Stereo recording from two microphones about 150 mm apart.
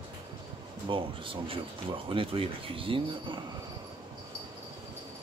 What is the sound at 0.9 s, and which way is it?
Speech, 35° right (ahead or behind).